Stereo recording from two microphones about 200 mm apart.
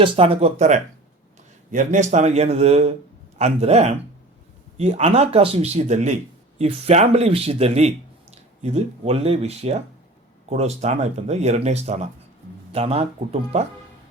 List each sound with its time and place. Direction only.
0.0 s speech: 30° right (ahead or behind)